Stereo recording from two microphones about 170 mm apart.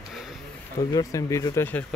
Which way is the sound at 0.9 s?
20° left (ahead or behind).